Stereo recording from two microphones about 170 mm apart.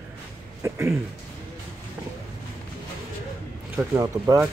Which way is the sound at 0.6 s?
15° right (ahead or behind).